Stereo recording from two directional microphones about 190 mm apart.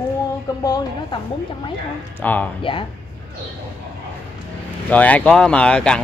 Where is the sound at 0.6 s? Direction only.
20° left (ahead or behind).